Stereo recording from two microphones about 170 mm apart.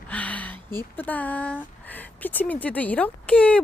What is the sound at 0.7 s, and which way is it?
A woman's voice, 10° left (ahead or behind).